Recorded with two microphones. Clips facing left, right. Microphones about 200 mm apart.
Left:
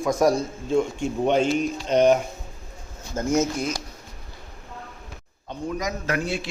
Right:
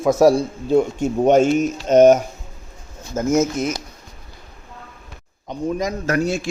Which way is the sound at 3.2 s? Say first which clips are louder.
Right 5 dB; 25° right (ahead or behind).